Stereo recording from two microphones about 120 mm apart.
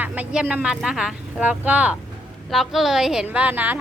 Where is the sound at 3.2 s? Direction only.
15° right (ahead or behind).